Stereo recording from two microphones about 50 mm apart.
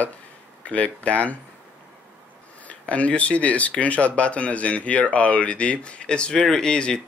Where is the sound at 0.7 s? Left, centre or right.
Left.